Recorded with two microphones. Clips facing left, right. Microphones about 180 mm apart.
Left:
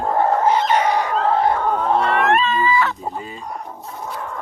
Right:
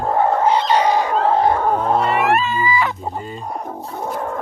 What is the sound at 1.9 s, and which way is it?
Speech, 5° right (ahead or behind).